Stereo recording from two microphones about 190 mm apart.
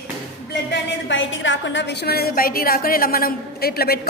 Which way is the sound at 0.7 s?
80° left.